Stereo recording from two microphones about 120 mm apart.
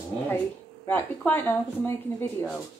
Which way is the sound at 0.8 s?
15° left (ahead or behind).